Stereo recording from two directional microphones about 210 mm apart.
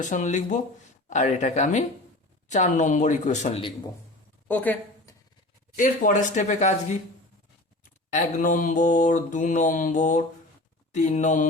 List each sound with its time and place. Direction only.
0.0 s mantra: 35° left (ahead or behind)
4.4 s a sound: 10° left (ahead or behind)
5.7 s mantra: 40° left (ahead or behind)
8.1 s mantra: 40° left (ahead or behind)